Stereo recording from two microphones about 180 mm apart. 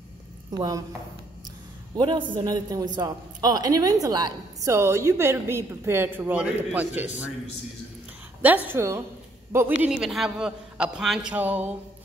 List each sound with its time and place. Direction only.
0.5 s a woman's voice: 20° right (ahead or behind)
2.0 s a man's voice: 25° right (ahead or behind); by 7.1 s 10° right (ahead or behind)
8.4 s a man's voice: 10° right (ahead or behind)
9.8 s a man's voice: centre (ahead or behind)